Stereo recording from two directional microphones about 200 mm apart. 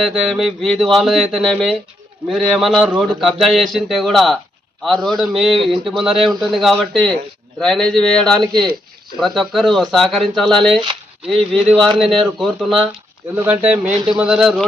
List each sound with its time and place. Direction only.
0.0 s speech: centre (ahead or behind)
2.6 s speech: centre (ahead or behind)
10.8 s a sound: 25° right (ahead or behind)
11.5 s speech: centre (ahead or behind)